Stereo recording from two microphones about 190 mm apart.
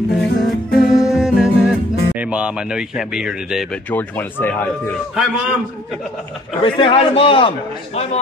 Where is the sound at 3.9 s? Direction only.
10° left (ahead or behind).